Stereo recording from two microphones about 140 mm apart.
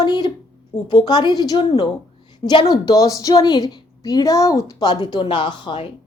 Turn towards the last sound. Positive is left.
turn(degrees=35)  # may be behind; listen again after turning